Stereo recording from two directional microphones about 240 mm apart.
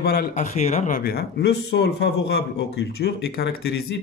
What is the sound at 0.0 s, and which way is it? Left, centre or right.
A man's voice, left.